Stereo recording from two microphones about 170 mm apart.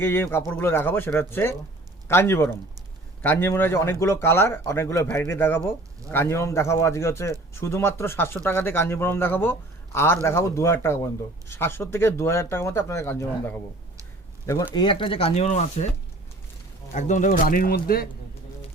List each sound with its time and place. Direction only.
0.0 s a man's voice: 15° left (ahead or behind)
14.7 s speech: 25° left (ahead or behind); by 15.9 s 45° left (ahead or behind)
16.9 s speech: 45° left (ahead or behind); by 18.1 s 60° left (ahead or behind)